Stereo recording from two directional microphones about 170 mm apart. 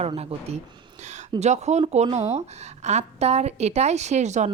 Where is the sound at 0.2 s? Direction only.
40° right (ahead or behind).